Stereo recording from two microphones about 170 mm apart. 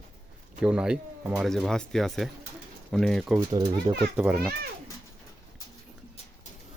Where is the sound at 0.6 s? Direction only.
5° right (ahead or behind).